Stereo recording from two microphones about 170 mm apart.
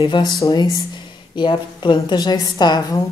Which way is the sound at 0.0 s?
25° left (ahead or behind).